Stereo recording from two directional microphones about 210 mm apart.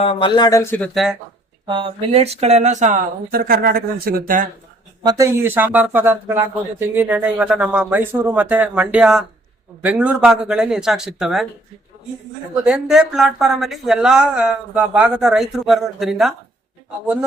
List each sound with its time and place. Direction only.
0.0 s speech: 25° left (ahead or behind)
1.6 s speech: 25° right (ahead or behind); by 4.4 s 40° right (ahead or behind)
5.0 s speech: 15° right (ahead or behind)
12.6 s speech: 5° right (ahead or behind)